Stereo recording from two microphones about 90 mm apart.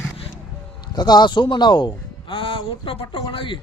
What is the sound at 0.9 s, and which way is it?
Speech, 50° left (ahead or behind).